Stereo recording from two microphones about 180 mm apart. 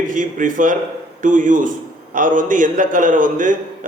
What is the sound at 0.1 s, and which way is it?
A man's voice, 45° right (ahead or behind).